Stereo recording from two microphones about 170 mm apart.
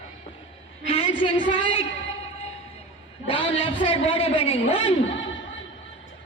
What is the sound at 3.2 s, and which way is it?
A man's voice, 30° left (ahead or behind).